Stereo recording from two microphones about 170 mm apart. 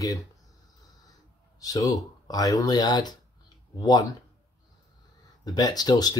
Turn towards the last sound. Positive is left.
turn(degrees=25)  # may be behind; listen again after turning